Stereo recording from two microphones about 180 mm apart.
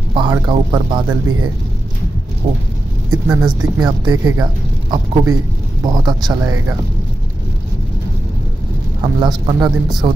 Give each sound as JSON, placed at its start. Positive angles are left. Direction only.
{"t": 0.1, "sound": "speech", "side_deg": -25}
{"t": 9.2, "sound": "speech", "side_deg": -20}